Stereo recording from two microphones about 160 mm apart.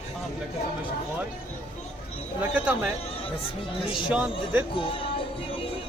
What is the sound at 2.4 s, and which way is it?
Speech, 10° right (ahead or behind).